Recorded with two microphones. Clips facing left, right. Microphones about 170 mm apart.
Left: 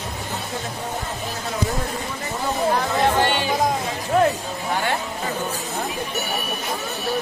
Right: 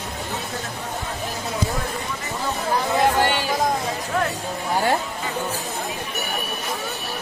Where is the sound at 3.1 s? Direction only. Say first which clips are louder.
Even; 10° right (ahead or behind).